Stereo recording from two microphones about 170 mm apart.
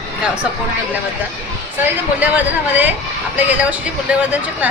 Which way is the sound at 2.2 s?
10° right (ahead or behind).